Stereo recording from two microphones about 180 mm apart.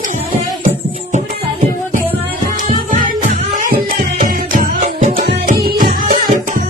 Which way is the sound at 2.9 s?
45° right (ahead or behind).